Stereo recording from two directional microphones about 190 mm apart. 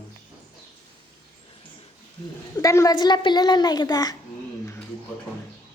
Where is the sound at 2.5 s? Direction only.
15° left (ahead or behind).